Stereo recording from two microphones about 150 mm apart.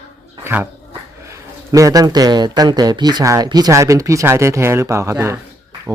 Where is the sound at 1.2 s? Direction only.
20° right (ahead or behind).